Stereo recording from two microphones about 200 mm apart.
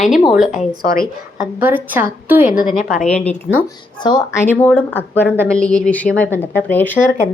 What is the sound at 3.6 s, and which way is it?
Speech, 20° left (ahead or behind).